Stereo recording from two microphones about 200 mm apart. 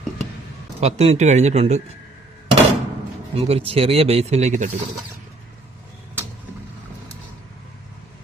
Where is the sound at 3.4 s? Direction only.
30° right (ahead or behind).